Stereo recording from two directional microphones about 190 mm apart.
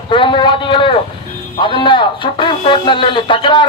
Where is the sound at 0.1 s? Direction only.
25° left (ahead or behind).